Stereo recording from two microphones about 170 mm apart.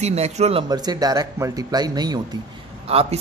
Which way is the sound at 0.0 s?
40° right (ahead or behind).